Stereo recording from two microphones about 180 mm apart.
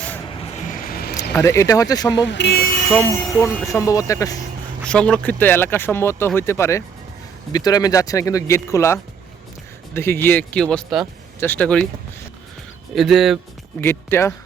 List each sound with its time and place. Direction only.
0.7 s vehicle: 50° left (ahead or behind)
1.4 s speech: 15° left (ahead or behind)
2.2 s speech: 75° left (ahead or behind)
2.9 s speech: 15° left (ahead or behind)
3.5 s speech: centre (ahead or behind)
3.8 s speech: 20° left (ahead or behind)
4.9 s speech: 5° left (ahead or behind)
12.9 s speech: centre (ahead or behind)
13.8 s speech: 15° left (ahead or behind)